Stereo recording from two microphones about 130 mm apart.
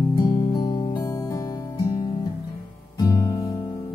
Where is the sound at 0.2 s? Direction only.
30° left (ahead or behind).